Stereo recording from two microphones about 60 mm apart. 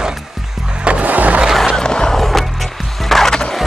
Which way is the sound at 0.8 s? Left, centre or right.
Right.